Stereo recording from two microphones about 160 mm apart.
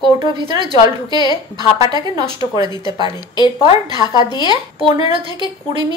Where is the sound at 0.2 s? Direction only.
30° right (ahead or behind).